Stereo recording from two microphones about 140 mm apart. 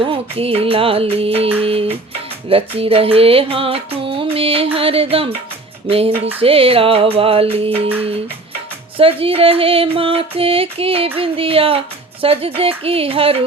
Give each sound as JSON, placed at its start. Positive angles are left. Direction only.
{"t": 0.0, "sound": "music", "side_deg": -40}
{"t": 9.0, "sound": "music", "side_deg": -40}